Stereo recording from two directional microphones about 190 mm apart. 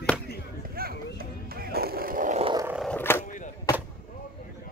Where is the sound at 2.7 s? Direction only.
Centre (ahead or behind).